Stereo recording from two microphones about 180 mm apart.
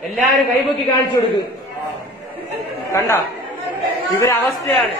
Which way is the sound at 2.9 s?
15° left (ahead or behind).